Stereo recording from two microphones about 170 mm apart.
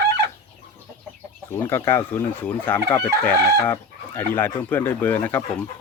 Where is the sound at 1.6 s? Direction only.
15° left (ahead or behind).